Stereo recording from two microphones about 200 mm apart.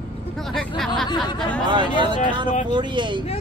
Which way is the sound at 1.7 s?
25° right (ahead or behind).